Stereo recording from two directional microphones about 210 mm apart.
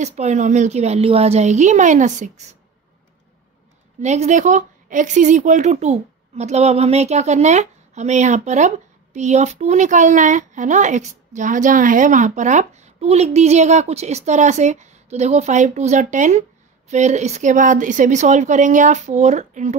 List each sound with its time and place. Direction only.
0.0 s speech: 35° right (ahead or behind)
4.0 s speech: 35° right (ahead or behind)